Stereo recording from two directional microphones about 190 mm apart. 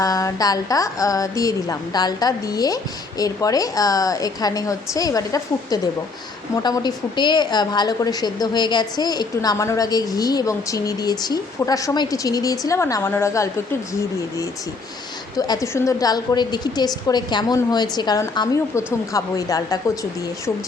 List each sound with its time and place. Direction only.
0.0 s a woman's voice: 15° left (ahead or behind)
15.4 s a woman's voice: 20° left (ahead or behind)